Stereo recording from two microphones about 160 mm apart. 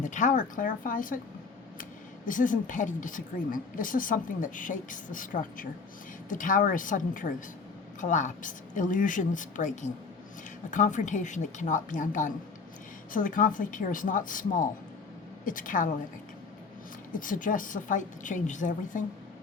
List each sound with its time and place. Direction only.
0.0 s a woman's voice: 50° left (ahead or behind)
17.1 s speech: 55° left (ahead or behind)